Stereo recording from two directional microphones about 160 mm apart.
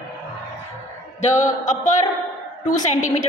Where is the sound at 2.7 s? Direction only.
50° left (ahead or behind).